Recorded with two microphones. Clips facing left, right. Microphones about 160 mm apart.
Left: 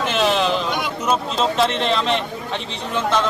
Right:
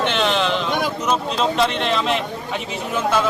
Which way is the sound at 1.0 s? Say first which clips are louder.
Left 2 dB; centre (ahead or behind).